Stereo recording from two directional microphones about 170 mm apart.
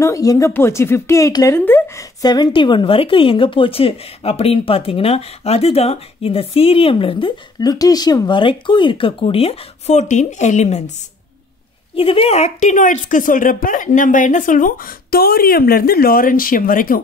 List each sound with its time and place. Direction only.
0.0 s speech: 20° left (ahead or behind); by 10.8 s 45° left (ahead or behind)
11.9 s speech: 35° left (ahead or behind); by 17.0 s 55° left (ahead or behind)